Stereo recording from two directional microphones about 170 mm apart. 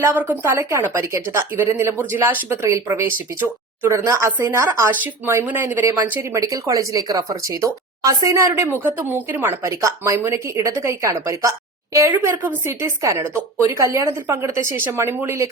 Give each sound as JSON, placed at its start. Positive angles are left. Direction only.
{"t": 0.0, "sound": "a woman's voice", "side_deg": -10}